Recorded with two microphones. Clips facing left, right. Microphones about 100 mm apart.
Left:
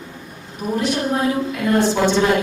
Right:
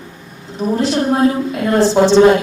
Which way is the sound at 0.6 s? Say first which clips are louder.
Right 5 dB; 30° right (ahead or behind).